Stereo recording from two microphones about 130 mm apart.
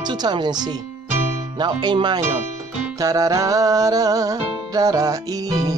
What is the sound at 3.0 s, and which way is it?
Music, 25° right (ahead or behind).